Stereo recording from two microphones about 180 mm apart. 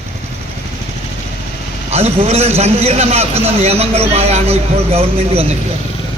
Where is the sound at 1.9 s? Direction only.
35° right (ahead or behind).